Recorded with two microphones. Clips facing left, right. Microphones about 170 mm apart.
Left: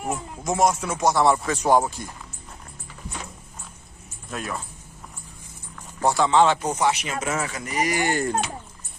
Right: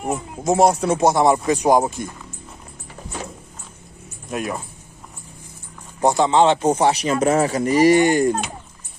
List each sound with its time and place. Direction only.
0.4 s speech: 30° right (ahead or behind)
4.3 s speech: 15° right (ahead or behind)
5.9 s speech: 20° right (ahead or behind)
8.1 s speech: 15° right (ahead or behind)